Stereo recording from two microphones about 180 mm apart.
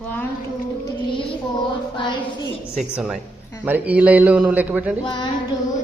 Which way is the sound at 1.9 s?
25° left (ahead or behind).